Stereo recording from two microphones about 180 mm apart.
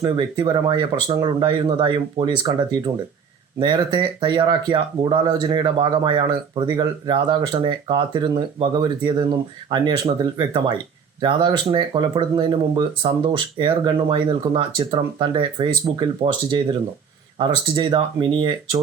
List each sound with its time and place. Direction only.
0.0 s speech: 25° right (ahead or behind)